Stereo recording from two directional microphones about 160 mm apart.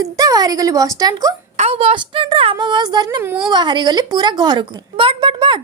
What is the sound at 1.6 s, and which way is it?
A woman's voice, 40° right (ahead or behind).